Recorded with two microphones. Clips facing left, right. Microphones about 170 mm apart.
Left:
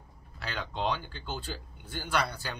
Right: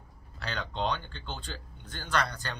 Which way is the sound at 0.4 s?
5° left (ahead or behind).